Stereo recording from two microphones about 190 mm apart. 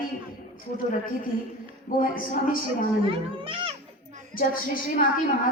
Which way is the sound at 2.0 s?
45° left (ahead or behind).